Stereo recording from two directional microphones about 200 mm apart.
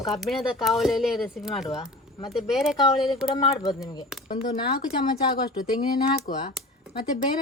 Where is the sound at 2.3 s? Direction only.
Centre (ahead or behind).